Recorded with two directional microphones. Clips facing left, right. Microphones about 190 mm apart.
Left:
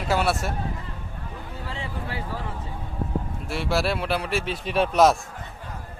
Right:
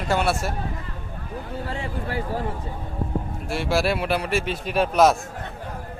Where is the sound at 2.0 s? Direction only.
45° right (ahead or behind).